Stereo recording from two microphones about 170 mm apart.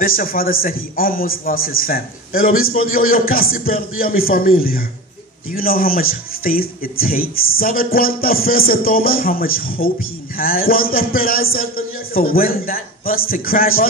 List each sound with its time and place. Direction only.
0.0 s a man's voice: 60° left (ahead or behind)